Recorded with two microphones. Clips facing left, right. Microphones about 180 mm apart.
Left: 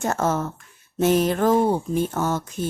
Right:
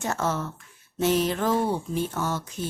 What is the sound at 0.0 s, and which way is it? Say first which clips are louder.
Speech: left 5 dB; 45° left (ahead or behind).